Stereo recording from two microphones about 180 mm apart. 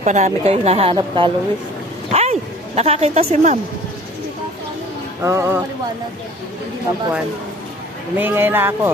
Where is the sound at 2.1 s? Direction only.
35° right (ahead or behind).